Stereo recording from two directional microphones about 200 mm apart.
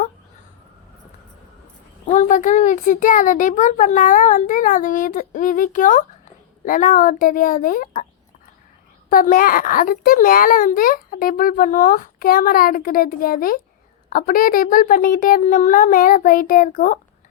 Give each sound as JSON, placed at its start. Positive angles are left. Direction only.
{"t": 2.0, "sound": "a child's voice", "side_deg": 35}
{"t": 9.0, "sound": "a child's voice", "side_deg": 45}